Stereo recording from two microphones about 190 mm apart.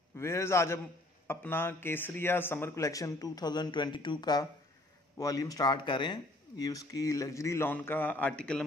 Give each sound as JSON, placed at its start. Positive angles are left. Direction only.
{"t": 0.1, "sound": "speech", "side_deg": 15}